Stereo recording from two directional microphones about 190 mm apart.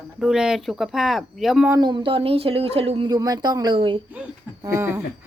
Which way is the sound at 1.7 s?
20° right (ahead or behind).